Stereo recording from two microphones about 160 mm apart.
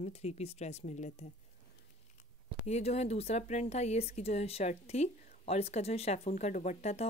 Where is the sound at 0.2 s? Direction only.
45° left (ahead or behind).